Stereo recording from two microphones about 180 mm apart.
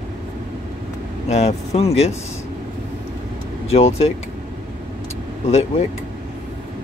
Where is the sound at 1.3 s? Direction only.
35° left (ahead or behind).